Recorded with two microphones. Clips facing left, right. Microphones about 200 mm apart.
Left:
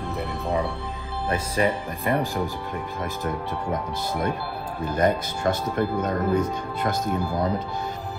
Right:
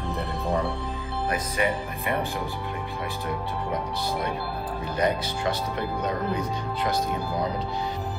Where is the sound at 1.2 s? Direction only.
30° left (ahead or behind).